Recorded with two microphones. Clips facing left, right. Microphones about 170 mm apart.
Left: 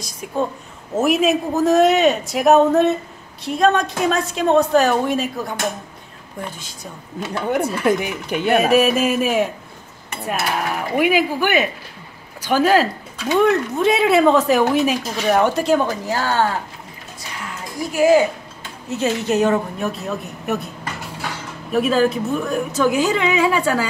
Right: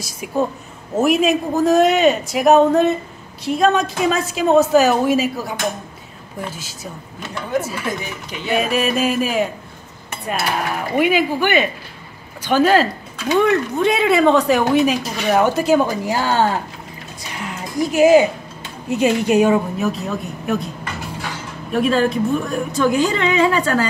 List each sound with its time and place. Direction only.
0.0 s a woman's voice: 5° right (ahead or behind)
7.8 s speech: 55° left (ahead or behind)
8.7 s speech: 5° left (ahead or behind)
10.2 s cutlery: centre (ahead or behind)
13.3 s speech: centre (ahead or behind)
16.1 s a woman's voice: 15° right (ahead or behind)
17.7 s a woman's voice: 20° right (ahead or behind)
19.9 s speech: centre (ahead or behind)
21.7 s speech: 5° left (ahead or behind)